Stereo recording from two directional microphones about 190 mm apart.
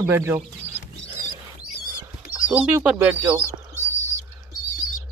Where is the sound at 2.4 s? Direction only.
5° right (ahead or behind).